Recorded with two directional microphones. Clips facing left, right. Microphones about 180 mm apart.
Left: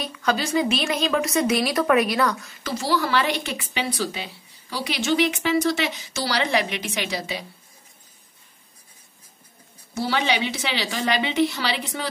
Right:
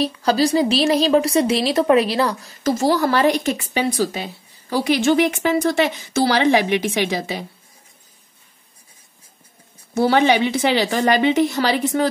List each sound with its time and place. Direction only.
0.0 s a woman's voice: 35° right (ahead or behind)
2.6 s speech: 45° right (ahead or behind)
9.9 s speech: 55° right (ahead or behind)